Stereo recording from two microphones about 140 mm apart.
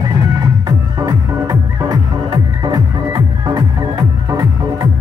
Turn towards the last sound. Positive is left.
turn(degrees=-25)  # may be behind; listen again after turning